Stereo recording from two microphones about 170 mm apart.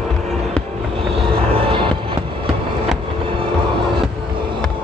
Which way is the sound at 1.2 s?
30° right (ahead or behind).